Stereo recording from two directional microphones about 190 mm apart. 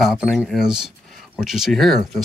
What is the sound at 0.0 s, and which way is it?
Speech, centre (ahead or behind).